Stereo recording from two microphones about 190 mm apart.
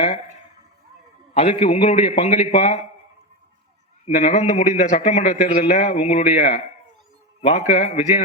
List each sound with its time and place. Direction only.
1.3 s a man's voice: 30° left (ahead or behind)
4.0 s a man's voice: 35° left (ahead or behind)